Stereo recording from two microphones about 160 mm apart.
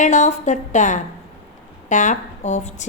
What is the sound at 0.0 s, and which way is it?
A woman's voice, 50° left (ahead or behind).